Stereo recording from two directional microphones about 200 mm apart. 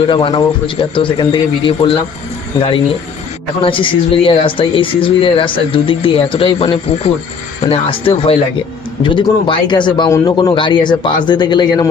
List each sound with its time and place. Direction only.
0.1 s speech: 25° left (ahead or behind)